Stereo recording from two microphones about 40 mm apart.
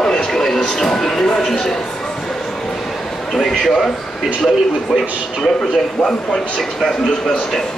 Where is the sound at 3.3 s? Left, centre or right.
Centre.